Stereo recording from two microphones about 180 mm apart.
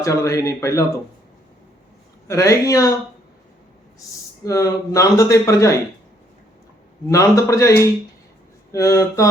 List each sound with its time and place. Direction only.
0.0 s speech: 15° left (ahead or behind)
2.2 s speech: 15° left (ahead or behind)
4.4 s speech: 20° left (ahead or behind)
7.1 s speech: 15° left (ahead or behind)